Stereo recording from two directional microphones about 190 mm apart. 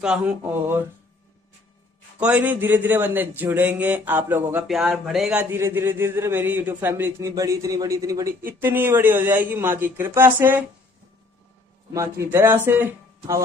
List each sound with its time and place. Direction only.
0.0 s a man's voice: 5° right (ahead or behind)
2.1 s a man's voice: 5° right (ahead or behind)
11.9 s a man's voice: 15° right (ahead or behind)